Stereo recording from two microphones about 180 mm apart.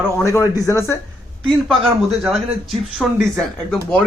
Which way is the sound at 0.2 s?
15° left (ahead or behind).